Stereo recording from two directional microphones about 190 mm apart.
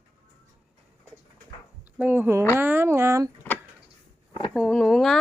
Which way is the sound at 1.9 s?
10° right (ahead or behind).